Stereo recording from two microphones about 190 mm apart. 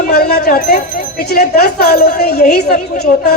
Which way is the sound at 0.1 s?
60° left (ahead or behind).